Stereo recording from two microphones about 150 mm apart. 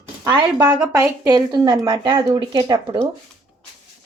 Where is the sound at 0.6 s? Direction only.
10° right (ahead or behind).